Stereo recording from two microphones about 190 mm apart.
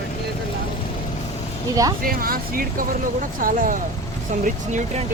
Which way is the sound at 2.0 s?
50° right (ahead or behind).